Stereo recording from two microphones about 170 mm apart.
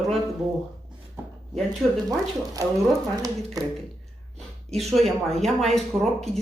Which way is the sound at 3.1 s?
20° right (ahead or behind).